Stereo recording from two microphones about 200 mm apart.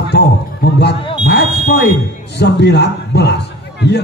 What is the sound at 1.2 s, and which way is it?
A man's voice, 55° left (ahead or behind).